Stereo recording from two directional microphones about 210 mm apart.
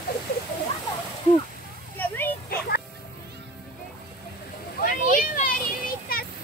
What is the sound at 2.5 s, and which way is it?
Music, 50° left (ahead or behind).